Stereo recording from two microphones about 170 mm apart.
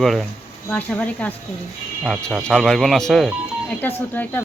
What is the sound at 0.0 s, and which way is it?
Speech, centre (ahead or behind).